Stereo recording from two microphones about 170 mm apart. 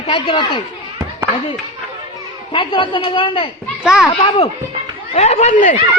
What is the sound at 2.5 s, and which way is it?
A man's voice, 30° left (ahead or behind).